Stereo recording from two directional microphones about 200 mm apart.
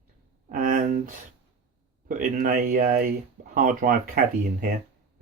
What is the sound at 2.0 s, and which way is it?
Speech, 45° right (ahead or behind).